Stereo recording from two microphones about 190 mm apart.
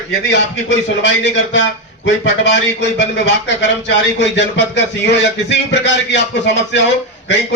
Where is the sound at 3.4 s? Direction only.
70° left (ahead or behind).